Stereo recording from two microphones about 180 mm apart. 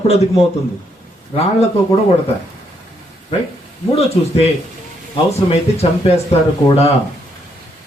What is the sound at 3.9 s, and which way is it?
Speech, 35° left (ahead or behind).